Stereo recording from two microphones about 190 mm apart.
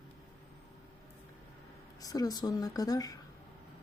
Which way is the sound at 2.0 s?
20° left (ahead or behind).